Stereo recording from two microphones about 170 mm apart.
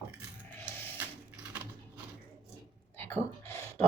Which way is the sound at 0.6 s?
15° left (ahead or behind).